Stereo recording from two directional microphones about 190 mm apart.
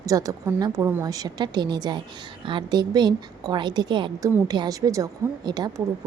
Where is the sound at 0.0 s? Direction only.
20° right (ahead or behind).